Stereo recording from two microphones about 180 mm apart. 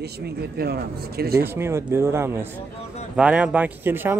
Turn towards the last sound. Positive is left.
turn(degrees=-10)  # may be behind; listen again after turning